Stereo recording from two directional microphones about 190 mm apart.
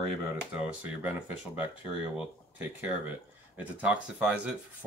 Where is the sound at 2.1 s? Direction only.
10° right (ahead or behind).